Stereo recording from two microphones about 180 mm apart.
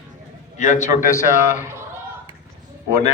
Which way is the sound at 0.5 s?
40° left (ahead or behind).